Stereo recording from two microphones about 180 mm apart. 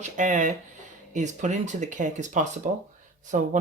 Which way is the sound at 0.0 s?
45° right (ahead or behind).